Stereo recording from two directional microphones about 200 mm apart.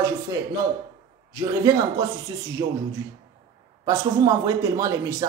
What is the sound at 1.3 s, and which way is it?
Speech, 15° right (ahead or behind).